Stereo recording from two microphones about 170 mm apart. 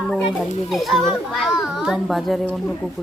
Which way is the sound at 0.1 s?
Centre (ahead or behind).